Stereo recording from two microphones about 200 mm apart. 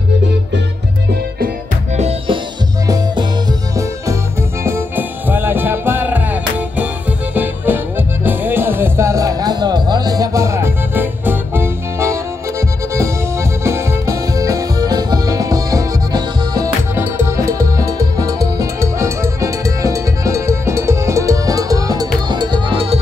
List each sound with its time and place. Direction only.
2.0 s music: 30° right (ahead or behind)
2.9 s music: 20° right (ahead or behind)